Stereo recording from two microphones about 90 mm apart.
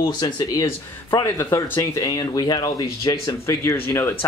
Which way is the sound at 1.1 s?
35° left (ahead or behind).